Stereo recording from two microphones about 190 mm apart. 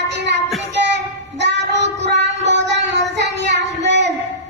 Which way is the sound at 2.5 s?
65° right (ahead or behind).